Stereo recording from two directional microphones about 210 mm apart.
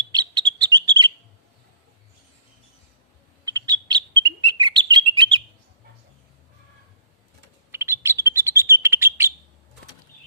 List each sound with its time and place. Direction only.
0.0 s bird: 20° right (ahead or behind)
3.4 s bird: 20° right (ahead or behind)
7.7 s bird: 10° right (ahead or behind)